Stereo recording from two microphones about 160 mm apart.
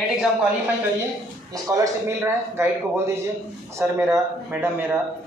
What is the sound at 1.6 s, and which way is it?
A man's voice, 20° right (ahead or behind).